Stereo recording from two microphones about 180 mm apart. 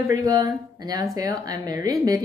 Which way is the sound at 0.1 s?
20° right (ahead or behind).